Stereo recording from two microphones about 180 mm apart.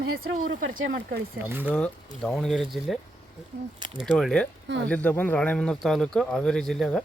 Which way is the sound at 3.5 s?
70° right (ahead or behind).